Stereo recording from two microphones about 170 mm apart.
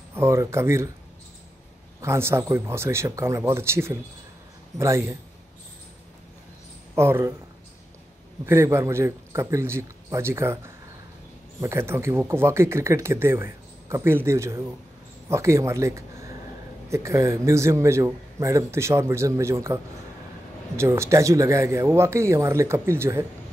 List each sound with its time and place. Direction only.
0.1 s speech: 15° right (ahead or behind)
2.0 s speech: 15° right (ahead or behind)
7.0 s speech: 15° right (ahead or behind)
8.5 s speech: 15° right (ahead or behind)